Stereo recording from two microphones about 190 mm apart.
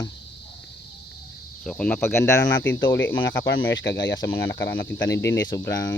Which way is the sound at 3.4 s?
80° left.